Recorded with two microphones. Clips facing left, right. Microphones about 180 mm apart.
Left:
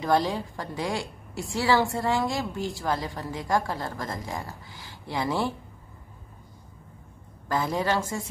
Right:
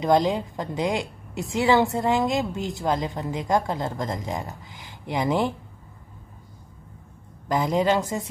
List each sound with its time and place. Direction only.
0.0 s a woman's voice: 20° right (ahead or behind)
7.4 s a woman's voice: 15° right (ahead or behind)